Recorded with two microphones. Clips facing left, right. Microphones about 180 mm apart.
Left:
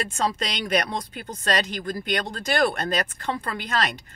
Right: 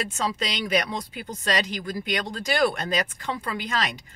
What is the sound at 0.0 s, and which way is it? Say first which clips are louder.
Speech: left 2 dB; 45° left (ahead or behind).